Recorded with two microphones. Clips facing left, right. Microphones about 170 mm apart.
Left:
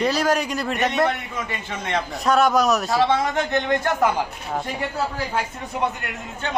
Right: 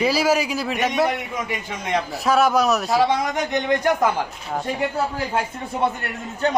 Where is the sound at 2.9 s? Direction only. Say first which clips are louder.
Even; 15° right (ahead or behind).